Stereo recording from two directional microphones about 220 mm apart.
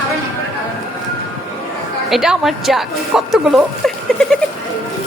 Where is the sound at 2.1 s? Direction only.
Centre (ahead or behind).